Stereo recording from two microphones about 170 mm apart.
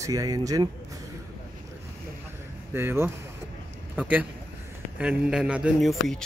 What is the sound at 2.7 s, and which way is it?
A man's voice, 15° right (ahead or behind).